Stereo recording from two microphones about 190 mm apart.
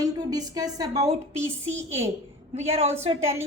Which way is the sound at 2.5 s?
35° right (ahead or behind).